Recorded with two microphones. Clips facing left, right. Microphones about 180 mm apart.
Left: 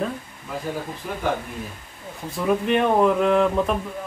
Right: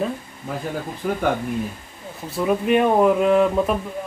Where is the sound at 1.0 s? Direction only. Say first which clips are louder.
Right 11 dB; 55° right (ahead or behind).